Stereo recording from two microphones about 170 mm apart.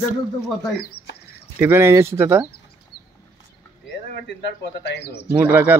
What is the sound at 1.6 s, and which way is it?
Speech, 15° right (ahead or behind).